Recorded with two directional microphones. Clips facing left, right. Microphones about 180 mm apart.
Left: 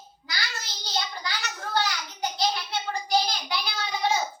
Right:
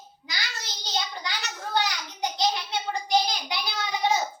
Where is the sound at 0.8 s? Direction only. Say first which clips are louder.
Even; 20° right (ahead or behind).